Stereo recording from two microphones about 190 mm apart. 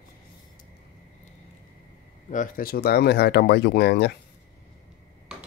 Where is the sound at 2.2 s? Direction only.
45° left (ahead or behind).